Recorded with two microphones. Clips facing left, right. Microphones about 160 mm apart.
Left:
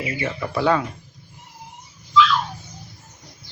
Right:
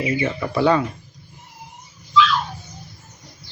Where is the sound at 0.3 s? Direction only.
Centre (ahead or behind).